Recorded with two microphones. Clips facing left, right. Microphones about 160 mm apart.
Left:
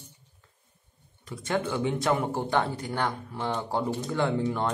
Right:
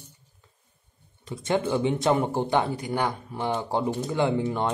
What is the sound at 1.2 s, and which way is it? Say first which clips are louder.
Speech: right 3 dB; 20° right (ahead or behind).